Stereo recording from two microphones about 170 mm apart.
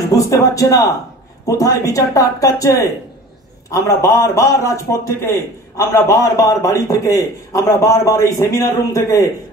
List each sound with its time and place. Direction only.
0.1 s a man's voice: 20° left (ahead or behind)